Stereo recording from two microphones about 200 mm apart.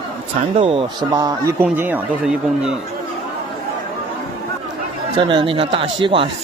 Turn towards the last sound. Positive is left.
turn(degrees=-25)  # may be behind; listen again after turning